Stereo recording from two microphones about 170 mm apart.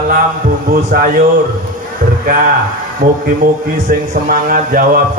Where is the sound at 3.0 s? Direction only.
60° right (ahead or behind).